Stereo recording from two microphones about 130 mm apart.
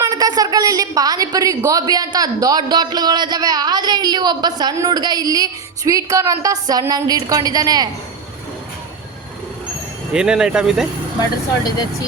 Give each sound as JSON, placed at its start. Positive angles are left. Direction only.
{"t": 0.0, "sound": "a woman's voice", "side_deg": -30}
{"t": 10.1, "sound": "speech", "side_deg": -5}
{"t": 11.2, "sound": "speech", "side_deg": 30}